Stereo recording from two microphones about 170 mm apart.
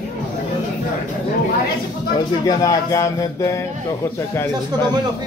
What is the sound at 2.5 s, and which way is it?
Speech, 20° left (ahead or behind).